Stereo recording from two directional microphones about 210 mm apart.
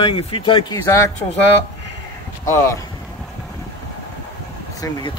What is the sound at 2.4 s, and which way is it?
Speech, 10° left (ahead or behind).